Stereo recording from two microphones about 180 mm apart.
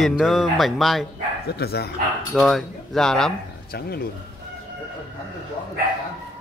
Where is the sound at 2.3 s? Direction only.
Centre (ahead or behind).